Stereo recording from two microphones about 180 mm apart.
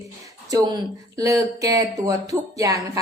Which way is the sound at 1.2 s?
20° right (ahead or behind).